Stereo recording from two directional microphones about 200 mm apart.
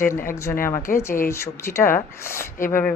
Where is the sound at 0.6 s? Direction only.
15° left (ahead or behind).